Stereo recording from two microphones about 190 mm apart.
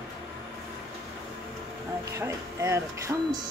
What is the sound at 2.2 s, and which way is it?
Speech, 15° right (ahead or behind).